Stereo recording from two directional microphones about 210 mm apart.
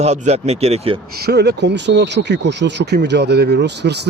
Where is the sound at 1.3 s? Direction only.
50° right (ahead or behind).